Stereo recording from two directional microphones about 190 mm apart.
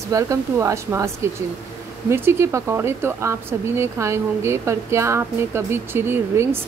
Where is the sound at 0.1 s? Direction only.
15° right (ahead or behind).